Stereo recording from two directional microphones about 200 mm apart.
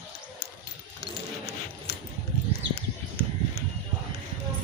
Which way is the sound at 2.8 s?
55° left (ahead or behind).